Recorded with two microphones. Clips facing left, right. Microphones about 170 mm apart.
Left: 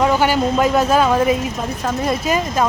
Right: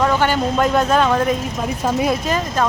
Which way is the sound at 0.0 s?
10° left (ahead or behind).